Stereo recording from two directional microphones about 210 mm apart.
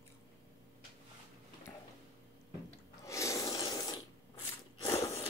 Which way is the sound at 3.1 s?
15° left (ahead or behind).